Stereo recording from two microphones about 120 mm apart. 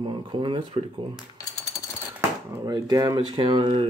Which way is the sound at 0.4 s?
40° right (ahead or behind).